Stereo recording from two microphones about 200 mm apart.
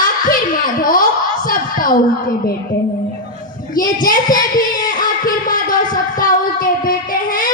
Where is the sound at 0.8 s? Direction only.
45° left (ahead or behind).